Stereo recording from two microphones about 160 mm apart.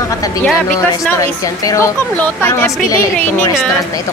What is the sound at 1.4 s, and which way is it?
A woman's voice, 20° left (ahead or behind).